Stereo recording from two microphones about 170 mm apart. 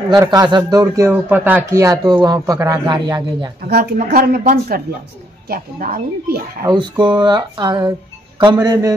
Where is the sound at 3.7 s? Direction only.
65° right (ahead or behind).